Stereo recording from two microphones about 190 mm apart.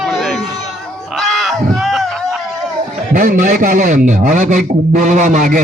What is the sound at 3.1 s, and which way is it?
A man's voice, 45° right (ahead or behind).